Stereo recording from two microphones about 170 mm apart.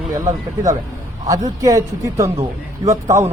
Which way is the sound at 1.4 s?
20° right (ahead or behind).